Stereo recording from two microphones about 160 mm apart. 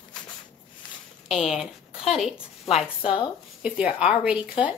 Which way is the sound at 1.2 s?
Centre (ahead or behind).